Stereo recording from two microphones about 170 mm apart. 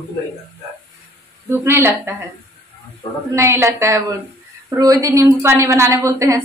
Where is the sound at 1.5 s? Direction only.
15° right (ahead or behind).